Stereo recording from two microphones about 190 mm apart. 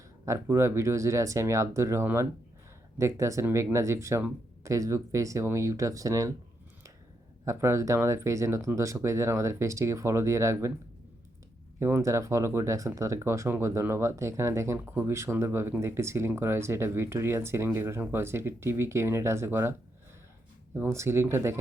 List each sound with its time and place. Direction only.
0.3 s speech: 15° right (ahead or behind)
7.4 s speech: 15° right (ahead or behind)
11.8 s speech: 15° right (ahead or behind)
20.7 s speech: 10° right (ahead or behind)